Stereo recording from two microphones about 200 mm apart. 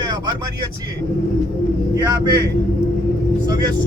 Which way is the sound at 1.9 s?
20° right (ahead or behind).